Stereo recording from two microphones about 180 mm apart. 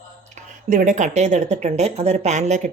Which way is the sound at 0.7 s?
45° right (ahead or behind).